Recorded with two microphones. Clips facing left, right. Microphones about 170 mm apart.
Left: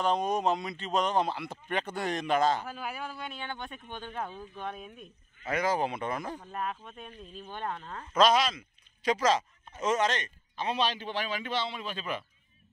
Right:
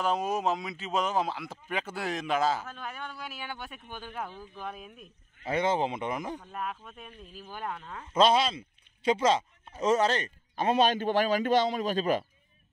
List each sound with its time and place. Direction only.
0.0 s speech: 5° right (ahead or behind)
5.4 s speech: 25° right (ahead or behind)
6.4 s speech: centre (ahead or behind)
8.1 s speech: 30° right (ahead or behind)
10.5 s a man's voice: 50° right (ahead or behind)